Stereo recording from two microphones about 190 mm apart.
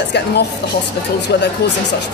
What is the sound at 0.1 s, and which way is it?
Speech, 60° left (ahead or behind).